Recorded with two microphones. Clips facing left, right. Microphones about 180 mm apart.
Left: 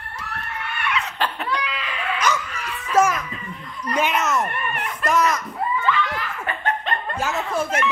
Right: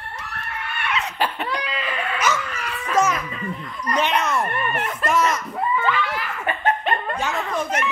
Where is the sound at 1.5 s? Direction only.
45° right (ahead or behind).